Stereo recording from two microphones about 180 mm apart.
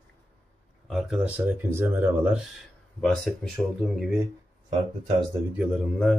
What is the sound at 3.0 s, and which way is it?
Speech, 5° left (ahead or behind).